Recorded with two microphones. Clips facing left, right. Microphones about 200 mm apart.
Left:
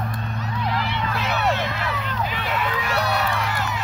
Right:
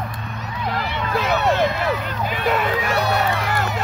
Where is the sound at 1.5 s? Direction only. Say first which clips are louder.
Right 6 dB; 45° right (ahead or behind).